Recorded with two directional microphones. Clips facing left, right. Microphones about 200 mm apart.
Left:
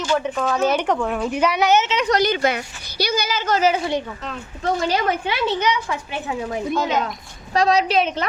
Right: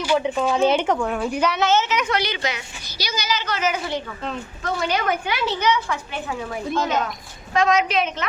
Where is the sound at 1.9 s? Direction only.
40° left (ahead or behind); by 6.5 s 20° left (ahead or behind).